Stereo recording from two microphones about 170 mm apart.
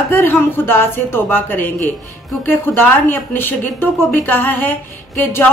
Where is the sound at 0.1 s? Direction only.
10° left (ahead or behind).